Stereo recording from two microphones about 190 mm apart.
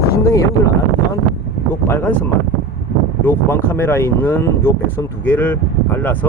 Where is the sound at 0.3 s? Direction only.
15° left (ahead or behind).